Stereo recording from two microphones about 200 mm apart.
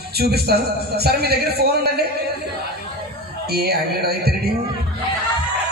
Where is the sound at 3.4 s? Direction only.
50° right (ahead or behind).